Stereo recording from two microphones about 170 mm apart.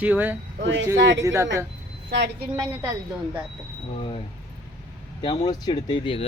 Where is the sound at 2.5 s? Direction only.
25° right (ahead or behind).